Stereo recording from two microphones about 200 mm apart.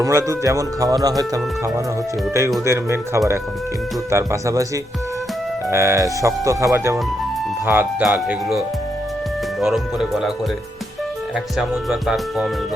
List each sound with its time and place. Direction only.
0.0 s speech: 15° right (ahead or behind)
5.7 s speech: 15° right (ahead or behind)
11.5 s speech: centre (ahead or behind)